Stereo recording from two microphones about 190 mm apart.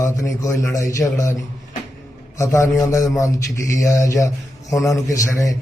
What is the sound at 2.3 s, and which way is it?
A man's voice, 15° left (ahead or behind).